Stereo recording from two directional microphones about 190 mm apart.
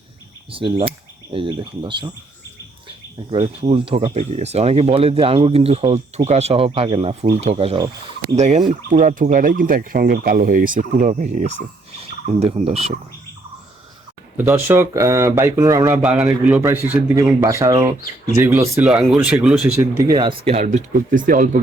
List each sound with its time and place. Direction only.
0.5 s speech: 25° right (ahead or behind)
3.2 s speech: 25° right (ahead or behind)
14.3 s speech: 10° right (ahead or behind)
16.0 s speech: 5° right (ahead or behind)
20.1 s speech: 25° right (ahead or behind)
20.7 s speech: 45° right (ahead or behind)